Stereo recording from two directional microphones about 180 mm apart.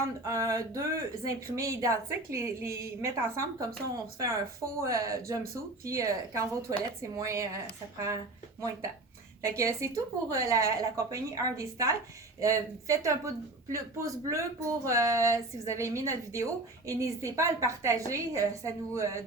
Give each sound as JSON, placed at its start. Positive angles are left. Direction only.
{"t": 0.3, "sound": "speech", "side_deg": -20}
{"t": 4.8, "sound": "speech", "side_deg": -15}
{"t": 9.4, "sound": "speech", "side_deg": -15}